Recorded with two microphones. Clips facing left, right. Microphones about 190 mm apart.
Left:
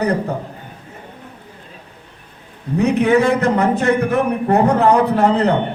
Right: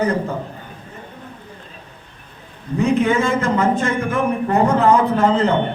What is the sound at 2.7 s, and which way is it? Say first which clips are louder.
A man's voice: left 3 dB; 65° left (ahead or behind).